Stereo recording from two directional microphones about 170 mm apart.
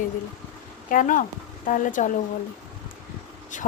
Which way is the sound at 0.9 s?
50° left (ahead or behind).